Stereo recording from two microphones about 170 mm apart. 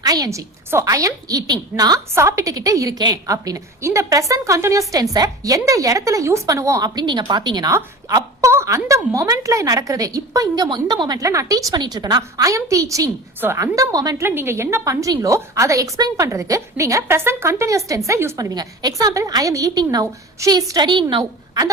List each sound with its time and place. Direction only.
0.0 s a woman's voice: 20° right (ahead or behind)